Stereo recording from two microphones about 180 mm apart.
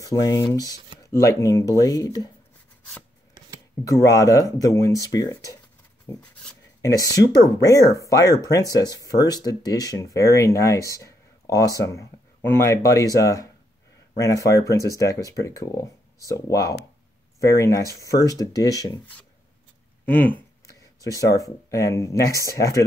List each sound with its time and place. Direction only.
0.0 s speech: 20° left (ahead or behind)
3.8 s speech: 20° left (ahead or behind)
6.0 s writing: 10° left (ahead or behind)
6.9 s speech: 20° left (ahead or behind)
20.1 s speech: 10° left (ahead or behind)
20.6 s a sound: 20° left (ahead or behind)
21.4 s speech: 15° left (ahead or behind)